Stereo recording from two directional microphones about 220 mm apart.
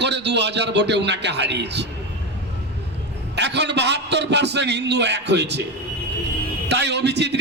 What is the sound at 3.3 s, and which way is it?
A man's voice, 50° right (ahead or behind).